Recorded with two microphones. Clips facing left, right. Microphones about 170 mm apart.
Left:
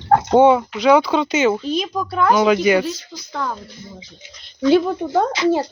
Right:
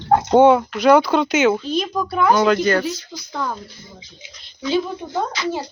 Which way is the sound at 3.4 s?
10° right (ahead or behind).